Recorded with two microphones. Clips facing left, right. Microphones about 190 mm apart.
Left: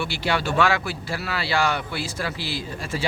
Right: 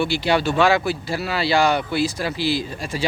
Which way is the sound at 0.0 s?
20° right (ahead or behind).